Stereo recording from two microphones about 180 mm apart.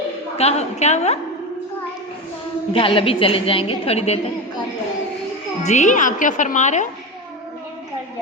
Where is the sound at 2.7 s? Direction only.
30° left (ahead or behind).